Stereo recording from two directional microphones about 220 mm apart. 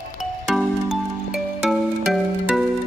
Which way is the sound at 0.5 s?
Centre (ahead or behind).